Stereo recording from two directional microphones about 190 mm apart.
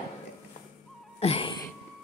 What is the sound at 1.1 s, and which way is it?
Music, 30° left (ahead or behind).